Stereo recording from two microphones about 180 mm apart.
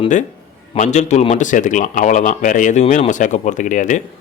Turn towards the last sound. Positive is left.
turn(degrees=45)  # may be behind; listen again after turning